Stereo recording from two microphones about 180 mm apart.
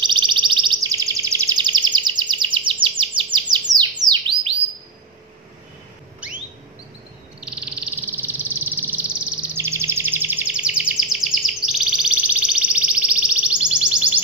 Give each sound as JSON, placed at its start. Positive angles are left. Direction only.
{"t": 0.0, "sound": "a sound", "side_deg": -25}
{"t": 3.8, "sound": "bird", "side_deg": -25}
{"t": 7.3, "sound": "bird", "side_deg": -5}
{"t": 11.8, "sound": "music", "side_deg": -5}